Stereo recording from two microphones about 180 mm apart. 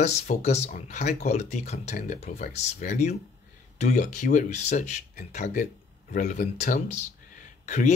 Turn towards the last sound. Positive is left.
turn(degrees=40)  # may be behind; listen again after turning